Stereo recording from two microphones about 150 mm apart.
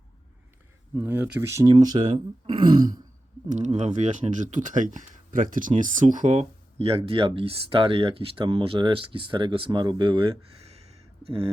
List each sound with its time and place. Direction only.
0.9 s speech: 15° right (ahead or behind); by 2.9 s 30° right (ahead or behind)
3.5 s speech: 50° right (ahead or behind)
10.7 s a sound: 45° right (ahead or behind)